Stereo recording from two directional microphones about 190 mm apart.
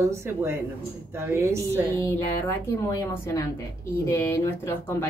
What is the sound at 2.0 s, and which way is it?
Speech, 15° left (ahead or behind).